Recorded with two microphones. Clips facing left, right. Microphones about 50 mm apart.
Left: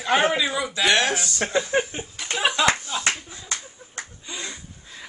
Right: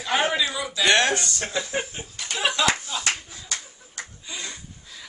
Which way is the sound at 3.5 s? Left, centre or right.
Left.